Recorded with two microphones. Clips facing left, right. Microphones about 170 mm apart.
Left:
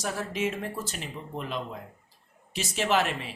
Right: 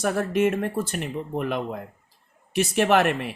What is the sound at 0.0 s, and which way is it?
Speech, 60° right (ahead or behind).